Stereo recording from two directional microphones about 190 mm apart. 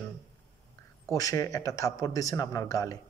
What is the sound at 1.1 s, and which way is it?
A man's voice, 15° left (ahead or behind).